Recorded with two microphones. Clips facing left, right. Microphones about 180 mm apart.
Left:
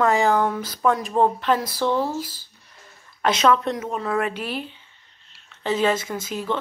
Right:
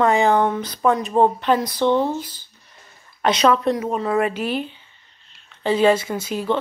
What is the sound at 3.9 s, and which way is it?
Speech, 25° right (ahead or behind).